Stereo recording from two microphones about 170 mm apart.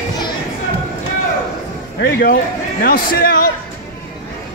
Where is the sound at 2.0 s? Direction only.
70° left (ahead or behind).